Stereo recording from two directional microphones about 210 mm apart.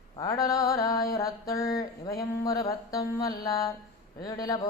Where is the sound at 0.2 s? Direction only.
15° left (ahead or behind).